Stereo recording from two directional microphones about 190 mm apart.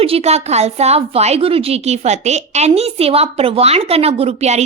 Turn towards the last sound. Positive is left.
turn(degrees=-35)  # may be behind; listen again after turning